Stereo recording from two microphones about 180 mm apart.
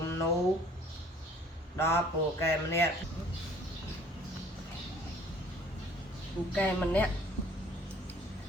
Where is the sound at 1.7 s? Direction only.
15° left (ahead or behind).